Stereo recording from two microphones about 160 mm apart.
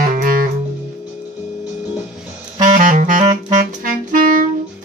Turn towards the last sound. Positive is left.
turn(degrees=-60)  # may be behind; listen again after turning